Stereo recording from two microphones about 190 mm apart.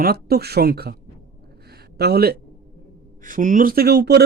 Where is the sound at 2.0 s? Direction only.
55° right (ahead or behind).